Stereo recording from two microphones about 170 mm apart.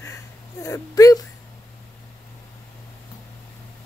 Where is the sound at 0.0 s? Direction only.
20° left (ahead or behind).